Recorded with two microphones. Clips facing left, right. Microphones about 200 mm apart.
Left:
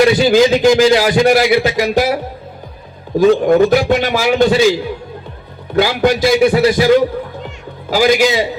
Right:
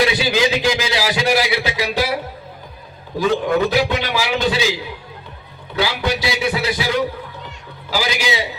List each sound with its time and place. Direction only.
0.0 s a man's voice: 45° left (ahead or behind)
3.2 s a man's voice: 45° left (ahead or behind)
5.7 s a man's voice: 50° left (ahead or behind)